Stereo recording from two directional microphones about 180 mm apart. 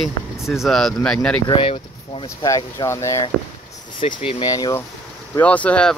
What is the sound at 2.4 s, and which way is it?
Speech, 20° left (ahead or behind).